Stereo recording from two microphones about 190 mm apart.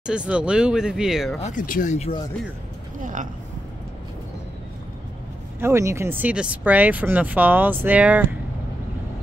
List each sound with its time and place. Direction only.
0.0 s speech: 5° right (ahead or behind)
1.4 s speech: 45° left (ahead or behind)
3.0 s a sound: 45° right (ahead or behind)
5.6 s speech: 15° right (ahead or behind)